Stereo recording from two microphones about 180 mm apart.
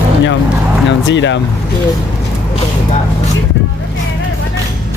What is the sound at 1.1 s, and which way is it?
Speech, 90° left.